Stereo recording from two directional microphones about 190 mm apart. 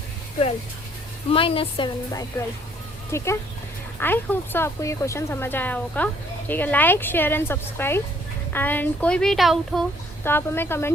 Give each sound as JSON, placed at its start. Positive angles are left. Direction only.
{"t": 1.3, "sound": "speech", "side_deg": 30}
{"t": 3.1, "sound": "speech", "side_deg": 15}
{"t": 10.2, "sound": "speech", "side_deg": 10}